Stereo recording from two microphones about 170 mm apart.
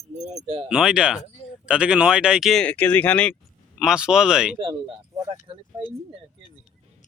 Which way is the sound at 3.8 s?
5° right (ahead or behind).